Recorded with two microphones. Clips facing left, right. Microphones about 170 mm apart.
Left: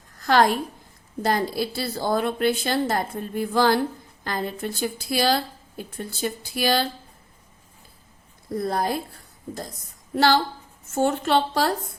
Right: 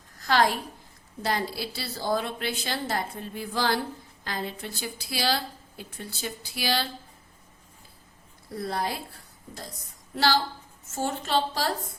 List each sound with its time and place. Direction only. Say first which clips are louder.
0.2 s a woman's voice: left 5 dB; 50° left (ahead or behind)
8.6 s a woman's voice: left 5 dB; 45° left (ahead or behind)
10.2 s a woman's voice: left 5 dB; 55° left (ahead or behind)